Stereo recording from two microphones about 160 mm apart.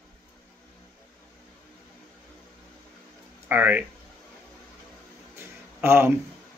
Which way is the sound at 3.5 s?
10° right (ahead or behind).